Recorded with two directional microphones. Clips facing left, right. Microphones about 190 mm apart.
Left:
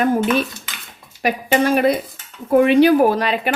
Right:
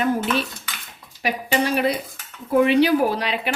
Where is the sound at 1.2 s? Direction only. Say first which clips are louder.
Left 5 dB; 50° left (ahead or behind).